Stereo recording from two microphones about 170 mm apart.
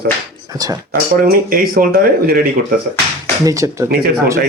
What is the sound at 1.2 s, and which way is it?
Speech, 60° right (ahead or behind).